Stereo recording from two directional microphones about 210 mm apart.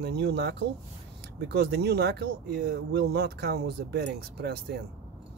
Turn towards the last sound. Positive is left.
turn(degrees=-50)  # may be behind; listen again after turning